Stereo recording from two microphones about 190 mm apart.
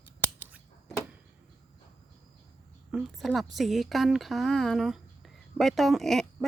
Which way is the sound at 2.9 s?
Centre (ahead or behind).